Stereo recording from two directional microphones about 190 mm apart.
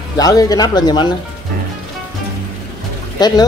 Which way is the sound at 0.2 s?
20° left (ahead or behind).